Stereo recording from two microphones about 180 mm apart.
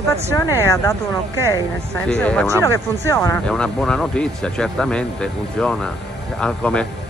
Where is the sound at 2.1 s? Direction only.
5° left (ahead or behind).